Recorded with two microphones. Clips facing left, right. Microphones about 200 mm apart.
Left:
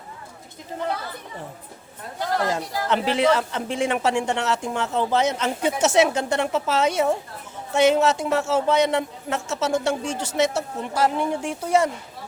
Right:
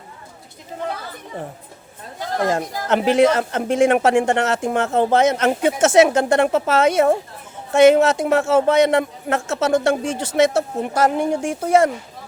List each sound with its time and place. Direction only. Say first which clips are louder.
2.4 s speech: right 4 dB; 45° right (ahead or behind)